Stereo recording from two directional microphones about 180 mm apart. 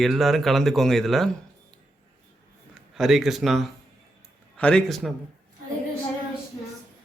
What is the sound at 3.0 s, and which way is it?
A man's voice, centre (ahead or behind).